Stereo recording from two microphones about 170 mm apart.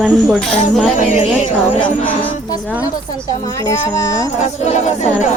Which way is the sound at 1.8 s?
10° left (ahead or behind).